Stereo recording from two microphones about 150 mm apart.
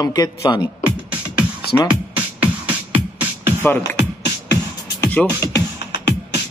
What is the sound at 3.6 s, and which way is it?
Speech, 15° left (ahead or behind).